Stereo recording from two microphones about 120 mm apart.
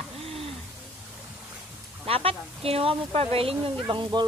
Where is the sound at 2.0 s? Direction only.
50° right (ahead or behind).